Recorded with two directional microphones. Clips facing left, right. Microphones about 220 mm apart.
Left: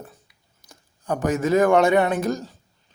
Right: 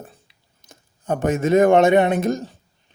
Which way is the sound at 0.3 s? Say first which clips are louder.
Right 2 dB; 25° right (ahead or behind).